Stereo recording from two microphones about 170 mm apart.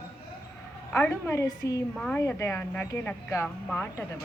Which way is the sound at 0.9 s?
10° left (ahead or behind).